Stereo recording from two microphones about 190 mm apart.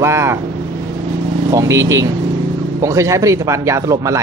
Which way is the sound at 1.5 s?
15° right (ahead or behind).